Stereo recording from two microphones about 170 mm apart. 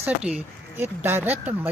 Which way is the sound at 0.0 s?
10° right (ahead or behind).